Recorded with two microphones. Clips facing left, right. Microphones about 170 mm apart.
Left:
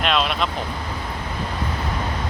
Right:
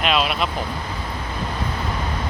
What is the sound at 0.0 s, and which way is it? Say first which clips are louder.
Speech: right 1 dB; 5° right (ahead or behind).